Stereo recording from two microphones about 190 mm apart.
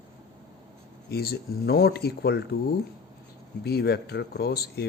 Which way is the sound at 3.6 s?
55° left (ahead or behind).